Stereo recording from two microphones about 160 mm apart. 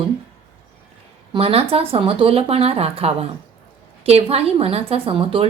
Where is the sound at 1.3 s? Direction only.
35° right (ahead or behind).